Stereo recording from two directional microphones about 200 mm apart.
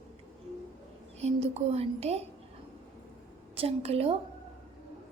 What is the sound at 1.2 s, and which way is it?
A woman's voice, 30° right (ahead or behind).